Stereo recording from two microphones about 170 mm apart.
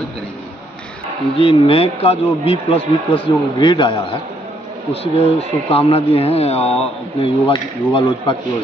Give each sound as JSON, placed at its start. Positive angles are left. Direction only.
{"t": 1.4, "sound": "speech", "side_deg": 35}